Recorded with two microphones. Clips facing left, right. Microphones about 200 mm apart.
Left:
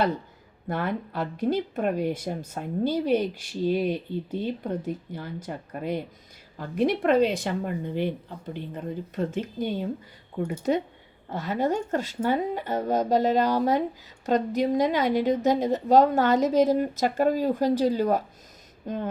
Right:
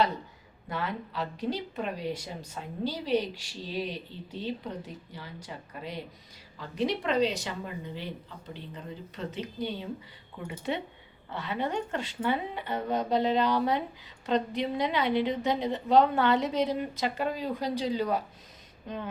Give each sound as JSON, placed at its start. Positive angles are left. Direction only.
{"t": 0.7, "sound": "speech", "side_deg": 50}